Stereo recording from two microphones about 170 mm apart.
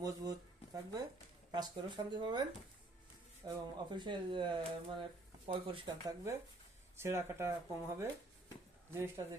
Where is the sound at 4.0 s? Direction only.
25° right (ahead or behind).